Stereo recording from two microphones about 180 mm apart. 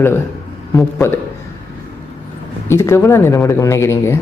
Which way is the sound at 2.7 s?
15° left (ahead or behind).